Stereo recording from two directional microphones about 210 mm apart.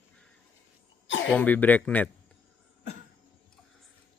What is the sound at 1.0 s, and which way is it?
Cough, 60° left (ahead or behind).